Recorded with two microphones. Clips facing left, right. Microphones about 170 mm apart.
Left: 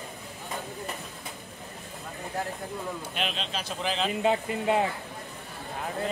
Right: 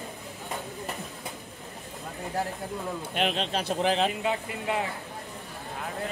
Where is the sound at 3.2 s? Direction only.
55° right (ahead or behind).